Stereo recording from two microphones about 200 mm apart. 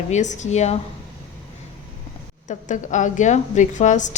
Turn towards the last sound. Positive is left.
turn(degrees=35)  # may be behind; listen again after turning